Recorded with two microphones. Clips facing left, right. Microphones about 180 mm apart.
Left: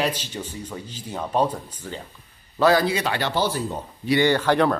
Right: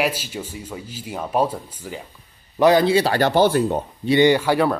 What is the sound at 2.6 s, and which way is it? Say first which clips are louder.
Speech: right 4 dB; 20° right (ahead or behind).